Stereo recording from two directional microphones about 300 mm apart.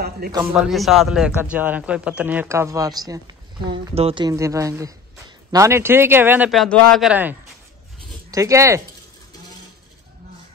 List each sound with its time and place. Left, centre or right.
0.2 s a man's voice: right
0.6 s a man's voice: centre